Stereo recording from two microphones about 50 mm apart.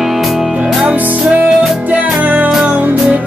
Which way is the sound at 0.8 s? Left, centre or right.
Right.